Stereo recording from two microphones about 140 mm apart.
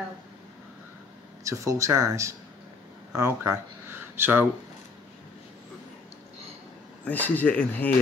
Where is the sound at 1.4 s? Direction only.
20° right (ahead or behind).